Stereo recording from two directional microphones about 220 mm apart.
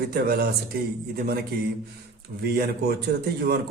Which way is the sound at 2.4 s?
45° right (ahead or behind).